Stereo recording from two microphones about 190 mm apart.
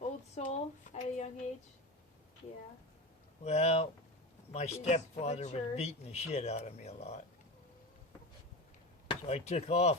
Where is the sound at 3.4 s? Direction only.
35° left (ahead or behind).